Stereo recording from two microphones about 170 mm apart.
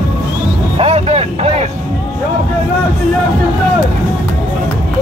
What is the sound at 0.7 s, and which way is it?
Music, 35° right (ahead or behind).